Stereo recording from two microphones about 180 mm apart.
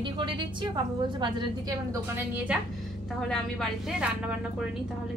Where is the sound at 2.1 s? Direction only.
10° right (ahead or behind).